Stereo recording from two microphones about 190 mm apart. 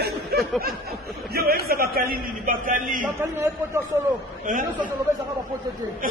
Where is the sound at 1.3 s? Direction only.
55° right (ahead or behind).